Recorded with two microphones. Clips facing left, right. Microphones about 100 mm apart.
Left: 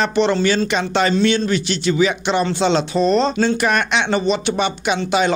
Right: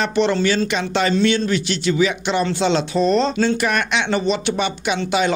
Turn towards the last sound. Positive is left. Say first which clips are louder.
# left 2 dB
turn(degrees=30)  # may be behind; listen again after turning